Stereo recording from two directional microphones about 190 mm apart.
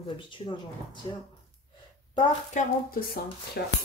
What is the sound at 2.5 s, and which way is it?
Speech, 50° left (ahead or behind).